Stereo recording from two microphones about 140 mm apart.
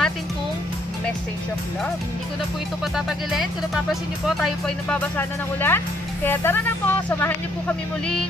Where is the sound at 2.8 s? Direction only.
Centre (ahead or behind).